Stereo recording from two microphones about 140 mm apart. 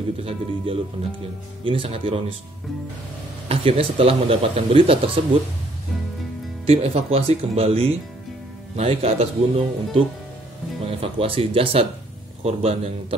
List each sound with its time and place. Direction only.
0.2 s a man's voice: 40° right (ahead or behind)
3.4 s a man's voice: 45° right (ahead or behind)
6.6 s a man's voice: 45° right (ahead or behind)